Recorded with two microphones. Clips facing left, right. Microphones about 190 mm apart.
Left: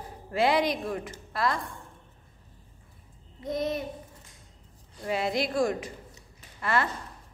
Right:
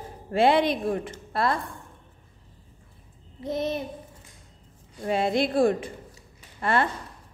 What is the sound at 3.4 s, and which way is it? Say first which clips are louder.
Speech: right 2 dB; 25° right (ahead or behind).